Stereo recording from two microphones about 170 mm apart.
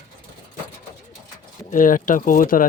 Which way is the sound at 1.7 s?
50° left (ahead or behind).